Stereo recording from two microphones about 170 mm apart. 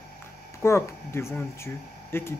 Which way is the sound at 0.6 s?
15° left (ahead or behind).